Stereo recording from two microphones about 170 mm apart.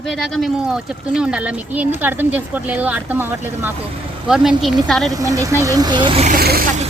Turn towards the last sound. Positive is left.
turn(degrees=-60)  # may be behind; listen again after turning